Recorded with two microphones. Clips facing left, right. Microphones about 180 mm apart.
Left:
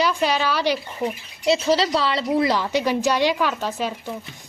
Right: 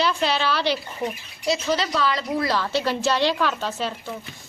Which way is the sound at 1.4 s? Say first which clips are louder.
Left 4 dB; 30° left (ahead or behind).